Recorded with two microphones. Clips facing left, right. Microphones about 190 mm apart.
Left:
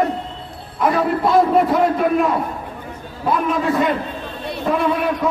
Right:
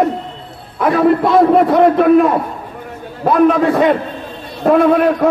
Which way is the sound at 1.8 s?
60° right (ahead or behind).